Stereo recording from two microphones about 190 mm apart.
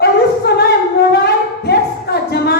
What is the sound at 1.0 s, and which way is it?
Wind instrument, 60° left (ahead or behind).